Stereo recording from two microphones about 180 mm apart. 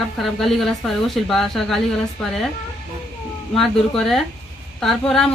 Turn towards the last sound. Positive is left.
turn(degrees=0)  # may be behind; listen again after turning